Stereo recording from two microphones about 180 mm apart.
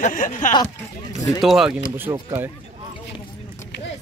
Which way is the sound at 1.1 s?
20° left (ahead or behind).